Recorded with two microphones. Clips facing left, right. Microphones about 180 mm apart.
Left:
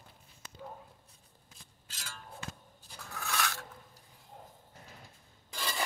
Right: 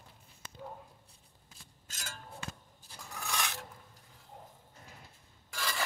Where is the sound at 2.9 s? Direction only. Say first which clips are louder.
Left 2 dB; 15° right (ahead or behind).